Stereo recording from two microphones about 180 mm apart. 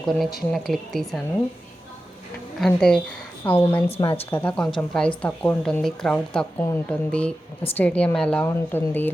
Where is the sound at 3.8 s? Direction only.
30° left (ahead or behind).